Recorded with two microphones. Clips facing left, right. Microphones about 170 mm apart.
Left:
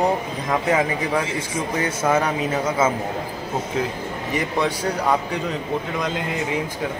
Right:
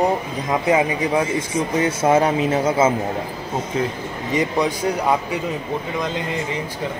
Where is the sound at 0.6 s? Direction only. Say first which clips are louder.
Right 4 dB; 15° right (ahead or behind).